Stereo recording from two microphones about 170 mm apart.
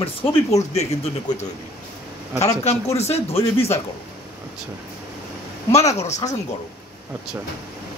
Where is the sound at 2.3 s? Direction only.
40° left (ahead or behind).